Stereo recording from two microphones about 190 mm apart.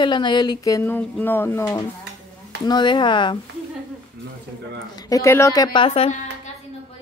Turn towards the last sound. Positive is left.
turn(degrees=25)  # may be behind; listen again after turning